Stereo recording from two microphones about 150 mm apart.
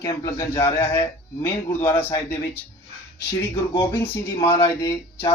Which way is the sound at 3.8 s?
15° left (ahead or behind).